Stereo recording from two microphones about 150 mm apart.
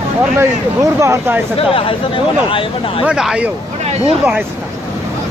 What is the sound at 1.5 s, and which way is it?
Speech, 35° left (ahead or behind).